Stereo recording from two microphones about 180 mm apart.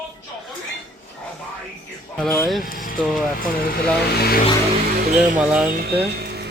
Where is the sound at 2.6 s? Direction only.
50° left (ahead or behind).